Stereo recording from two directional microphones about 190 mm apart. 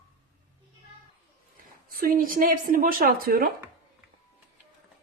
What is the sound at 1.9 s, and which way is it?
Speech, 50° right (ahead or behind).